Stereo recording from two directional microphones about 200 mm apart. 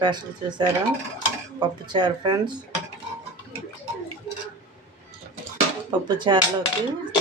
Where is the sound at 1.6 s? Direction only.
20° right (ahead or behind).